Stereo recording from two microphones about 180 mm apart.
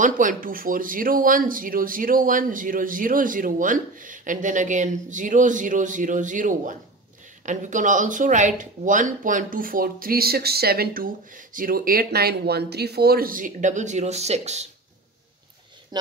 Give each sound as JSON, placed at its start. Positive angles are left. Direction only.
{"t": 0.0, "sound": "speech", "side_deg": -50}
{"t": 15.9, "sound": "speech", "side_deg": -25}